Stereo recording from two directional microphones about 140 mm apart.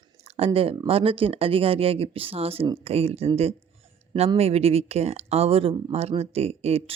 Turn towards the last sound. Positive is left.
turn(degrees=-50)  # may be behind; listen again after turning